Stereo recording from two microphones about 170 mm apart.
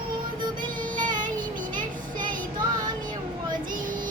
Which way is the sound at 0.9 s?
50° right (ahead or behind).